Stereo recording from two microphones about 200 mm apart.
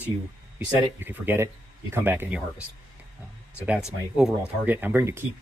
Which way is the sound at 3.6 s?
5° right (ahead or behind).